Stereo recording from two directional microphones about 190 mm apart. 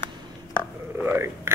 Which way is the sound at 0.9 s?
10° right (ahead or behind).